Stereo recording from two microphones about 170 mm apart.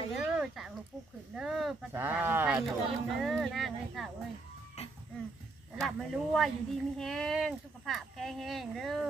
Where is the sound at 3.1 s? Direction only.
Centre (ahead or behind).